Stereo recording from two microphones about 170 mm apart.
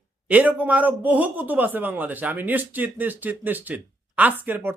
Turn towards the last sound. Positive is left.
turn(degrees=-10)  # may be behind; listen again after turning